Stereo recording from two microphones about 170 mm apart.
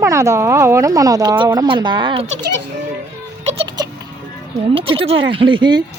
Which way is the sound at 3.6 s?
25° right (ahead or behind).